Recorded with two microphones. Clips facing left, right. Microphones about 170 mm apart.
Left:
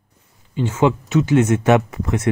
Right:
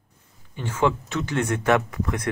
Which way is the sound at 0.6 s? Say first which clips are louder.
Left 6 dB; 20° left (ahead or behind).